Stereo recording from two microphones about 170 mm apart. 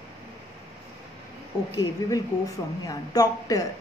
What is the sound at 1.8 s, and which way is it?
A woman's voice, 20° left (ahead or behind).